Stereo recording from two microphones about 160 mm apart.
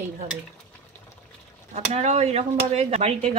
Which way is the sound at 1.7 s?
40° right (ahead or behind).